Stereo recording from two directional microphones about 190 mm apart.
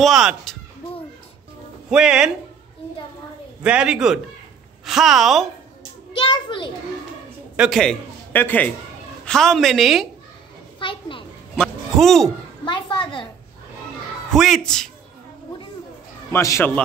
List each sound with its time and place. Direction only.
0.0 s a woman's voice: centre (ahead or behind)
1.9 s a woman's voice: 5° right (ahead or behind)
3.6 s a woman's voice: 5° right (ahead or behind)
6.1 s a child's voice: 25° left (ahead or behind)
7.5 s a man's voice: centre (ahead or behind)
10.8 s a sound: 25° left (ahead or behind)
11.5 s speech: centre (ahead or behind)
12.6 s a woman's voice: 25° left (ahead or behind)
14.3 s a woman's voice: centre (ahead or behind)
16.3 s a man's voice: 15° left (ahead or behind)